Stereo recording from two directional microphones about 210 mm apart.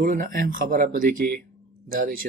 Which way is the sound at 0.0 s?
40° right (ahead or behind).